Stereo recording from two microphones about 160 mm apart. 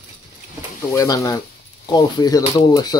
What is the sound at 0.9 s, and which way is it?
Speech, 20° left (ahead or behind).